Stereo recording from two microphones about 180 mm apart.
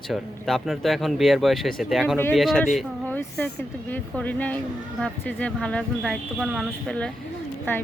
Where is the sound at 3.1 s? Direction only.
10° left (ahead or behind).